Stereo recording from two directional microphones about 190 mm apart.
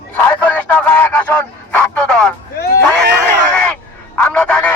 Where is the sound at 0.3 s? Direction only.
10° left (ahead or behind).